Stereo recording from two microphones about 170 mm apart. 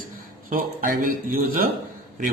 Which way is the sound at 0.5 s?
55° right (ahead or behind).